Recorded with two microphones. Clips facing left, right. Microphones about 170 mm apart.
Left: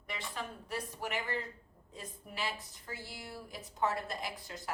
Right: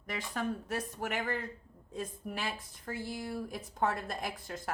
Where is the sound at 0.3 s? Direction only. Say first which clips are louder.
Right 7 dB; 50° right (ahead or behind).